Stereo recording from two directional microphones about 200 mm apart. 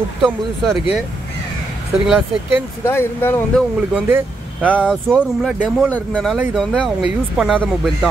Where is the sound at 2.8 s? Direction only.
10° left (ahead or behind).